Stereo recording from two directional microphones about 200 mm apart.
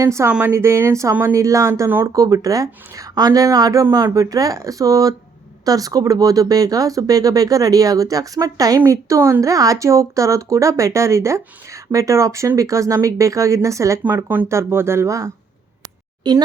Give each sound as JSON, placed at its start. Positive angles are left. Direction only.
{"t": 0.0, "sound": "speech", "side_deg": -15}